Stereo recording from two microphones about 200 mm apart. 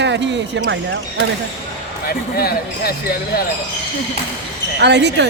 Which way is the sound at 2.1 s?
50° left (ahead or behind).